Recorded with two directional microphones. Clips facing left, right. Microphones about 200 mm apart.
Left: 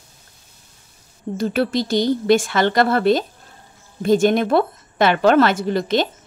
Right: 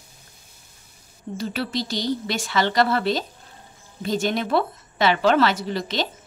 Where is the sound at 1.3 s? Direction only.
50° left (ahead or behind).